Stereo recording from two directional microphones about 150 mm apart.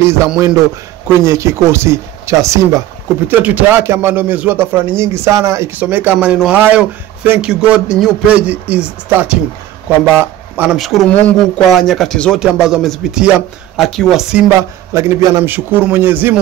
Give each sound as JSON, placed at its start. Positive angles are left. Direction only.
{"t": 0.0, "sound": "a man's voice", "side_deg": -20}
{"t": 10.5, "sound": "speech", "side_deg": -10}
{"t": 10.8, "sound": "speech", "side_deg": 0}
{"t": 14.6, "sound": "a man's voice", "side_deg": -20}